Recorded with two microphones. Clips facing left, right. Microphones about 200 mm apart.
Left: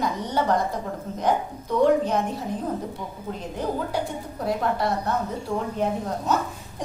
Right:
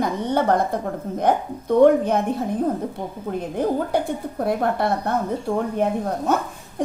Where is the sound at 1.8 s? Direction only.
55° right (ahead or behind).